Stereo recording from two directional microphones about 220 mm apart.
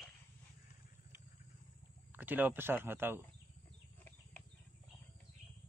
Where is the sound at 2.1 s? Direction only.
10° right (ahead or behind).